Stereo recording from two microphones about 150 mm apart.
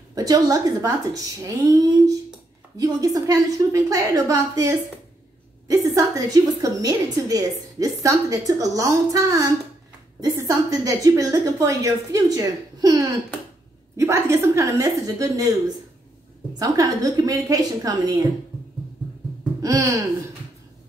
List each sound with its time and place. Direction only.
0.1 s a woman's voice: 25° right (ahead or behind)
16.5 s a woman's voice: 25° right (ahead or behind)
19.6 s a sound: 20° right (ahead or behind)